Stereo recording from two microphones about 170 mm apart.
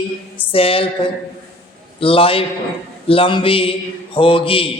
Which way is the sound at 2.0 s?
30° left (ahead or behind).